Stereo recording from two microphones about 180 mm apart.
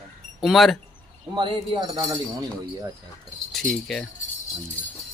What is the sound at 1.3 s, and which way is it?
Speech, 25° right (ahead or behind).